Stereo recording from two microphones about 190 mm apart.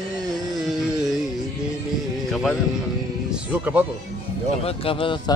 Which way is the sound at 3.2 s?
5° right (ahead or behind).